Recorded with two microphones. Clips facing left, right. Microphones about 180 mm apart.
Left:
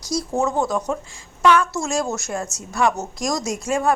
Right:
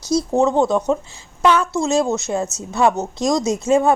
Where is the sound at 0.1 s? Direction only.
25° right (ahead or behind).